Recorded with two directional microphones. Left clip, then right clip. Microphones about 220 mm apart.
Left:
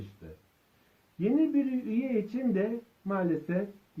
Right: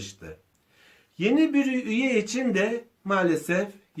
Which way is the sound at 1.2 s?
20° right (ahead or behind).